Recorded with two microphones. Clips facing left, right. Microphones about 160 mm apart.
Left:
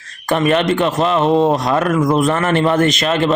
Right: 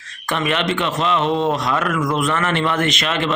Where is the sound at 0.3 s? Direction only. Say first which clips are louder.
Left 6 dB; 40° left (ahead or behind).